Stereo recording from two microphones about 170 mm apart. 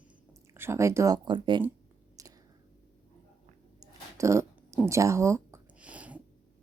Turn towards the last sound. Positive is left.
turn(degrees=-10)  # may be behind; listen again after turning